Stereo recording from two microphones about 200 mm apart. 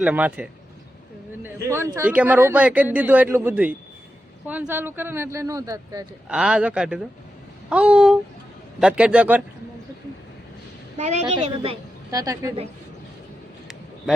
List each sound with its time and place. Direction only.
0.0 s speech: 5° right (ahead or behind)
6.2 s speech: 5° right (ahead or behind)
10.9 s a woman's voice: 35° right (ahead or behind)
12.1 s speech: 15° right (ahead or behind)